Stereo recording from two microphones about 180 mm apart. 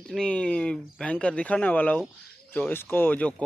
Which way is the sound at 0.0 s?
5° left (ahead or behind).